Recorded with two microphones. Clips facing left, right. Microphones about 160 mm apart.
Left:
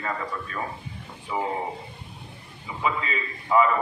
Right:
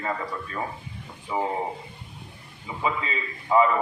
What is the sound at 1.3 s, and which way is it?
Speech, 25° right (ahead or behind).